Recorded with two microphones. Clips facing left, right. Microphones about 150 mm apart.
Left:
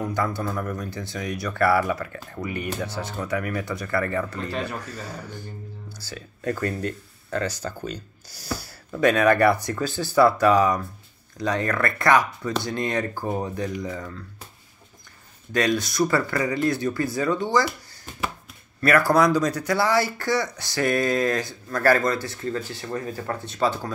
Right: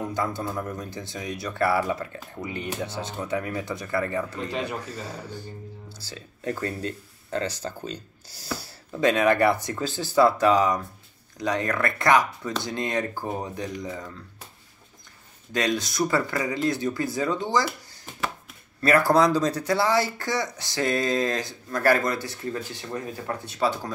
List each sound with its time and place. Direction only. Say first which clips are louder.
0.1 s speech: left 2 dB; 20° right (ahead or behind)
15.5 s speech: left 3 dB; 20° right (ahead or behind)
18.8 s speech: left 1 dB; 25° right (ahead or behind)